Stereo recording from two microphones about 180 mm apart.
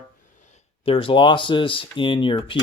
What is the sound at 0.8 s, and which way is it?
Speech, 30° left (ahead or behind).